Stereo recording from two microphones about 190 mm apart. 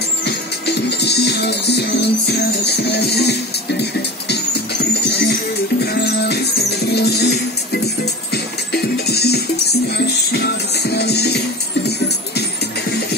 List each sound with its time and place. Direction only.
0.2 s music: 60° left (ahead or behind)